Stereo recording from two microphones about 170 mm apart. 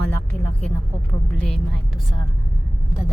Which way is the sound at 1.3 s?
5° left (ahead or behind).